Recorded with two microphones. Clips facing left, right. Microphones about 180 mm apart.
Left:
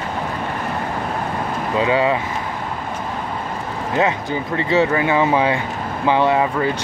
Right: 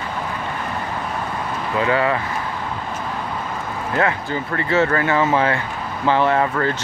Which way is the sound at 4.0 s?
20° left (ahead or behind).